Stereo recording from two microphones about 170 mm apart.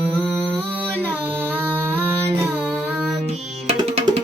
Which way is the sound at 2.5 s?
5° right (ahead or behind).